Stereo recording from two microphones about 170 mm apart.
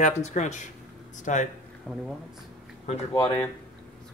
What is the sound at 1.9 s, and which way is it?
Speech, 5° left (ahead or behind).